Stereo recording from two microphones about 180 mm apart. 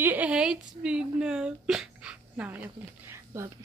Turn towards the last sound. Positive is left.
turn(degrees=-15)  # may be behind; listen again after turning